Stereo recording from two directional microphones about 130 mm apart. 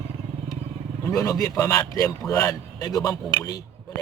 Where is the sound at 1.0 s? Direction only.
25° left (ahead or behind).